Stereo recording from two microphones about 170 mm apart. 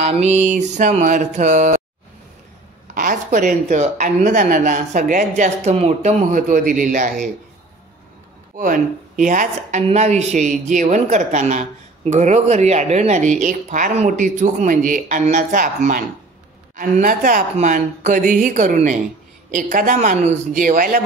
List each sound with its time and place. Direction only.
0.0 s a woman's voice: 40° right (ahead or behind)
2.9 s a woman's voice: 50° right (ahead or behind)
8.5 s a woman's voice: 55° right (ahead or behind)